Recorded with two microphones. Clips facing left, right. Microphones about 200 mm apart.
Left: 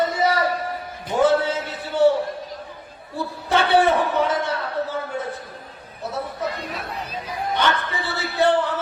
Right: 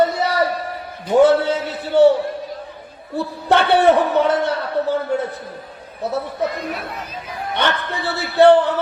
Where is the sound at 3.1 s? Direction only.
65° right (ahead or behind).